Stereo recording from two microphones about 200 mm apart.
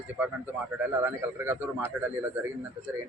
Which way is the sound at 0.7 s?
10° right (ahead or behind).